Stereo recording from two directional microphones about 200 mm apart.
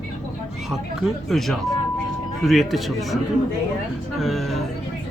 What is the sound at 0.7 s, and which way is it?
A man's voice, centre (ahead or behind).